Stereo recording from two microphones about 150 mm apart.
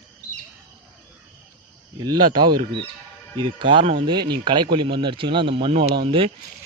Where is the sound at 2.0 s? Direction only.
30° right (ahead or behind).